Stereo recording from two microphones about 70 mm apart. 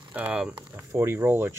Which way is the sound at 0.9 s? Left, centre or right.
Right.